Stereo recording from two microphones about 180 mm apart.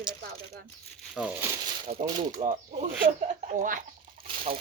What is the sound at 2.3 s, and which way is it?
Speech, 40° right (ahead or behind).